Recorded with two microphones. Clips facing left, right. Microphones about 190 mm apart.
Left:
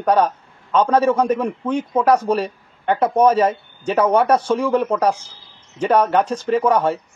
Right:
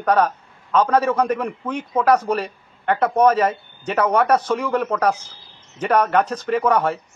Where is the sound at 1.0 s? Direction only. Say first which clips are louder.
Left 3 dB; 30° left (ahead or behind).